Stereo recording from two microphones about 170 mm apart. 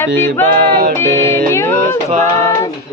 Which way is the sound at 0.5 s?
60° right (ahead or behind).